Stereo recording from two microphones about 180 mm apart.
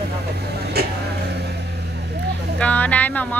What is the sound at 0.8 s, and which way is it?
Vehicle, 60° right (ahead or behind).